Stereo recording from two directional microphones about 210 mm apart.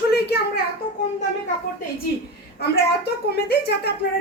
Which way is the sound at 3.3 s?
50° left (ahead or behind).